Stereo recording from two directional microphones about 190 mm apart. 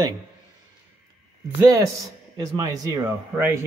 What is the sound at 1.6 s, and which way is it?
A man's voice, 15° right (ahead or behind).